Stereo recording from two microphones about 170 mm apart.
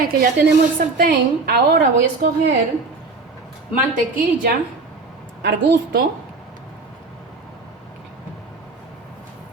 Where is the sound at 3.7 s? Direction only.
55° right (ahead or behind).